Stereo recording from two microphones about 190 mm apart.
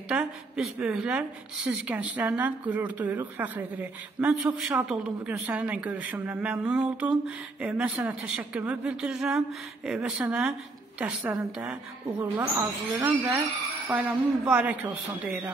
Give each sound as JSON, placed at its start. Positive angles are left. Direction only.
{"t": 0.1, "sound": "a woman's voice", "side_deg": -5}